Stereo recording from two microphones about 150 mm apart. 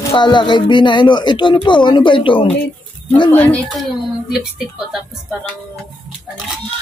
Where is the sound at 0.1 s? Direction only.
30° left (ahead or behind).